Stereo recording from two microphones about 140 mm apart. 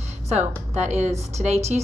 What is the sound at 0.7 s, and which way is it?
Speech, 55° right (ahead or behind).